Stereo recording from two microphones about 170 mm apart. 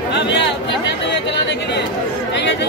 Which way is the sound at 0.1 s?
90° left.